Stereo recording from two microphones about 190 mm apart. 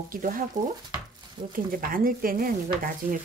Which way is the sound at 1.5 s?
45° right (ahead or behind).